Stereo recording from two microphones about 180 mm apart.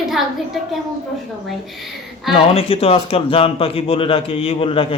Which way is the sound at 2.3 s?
30° left (ahead or behind).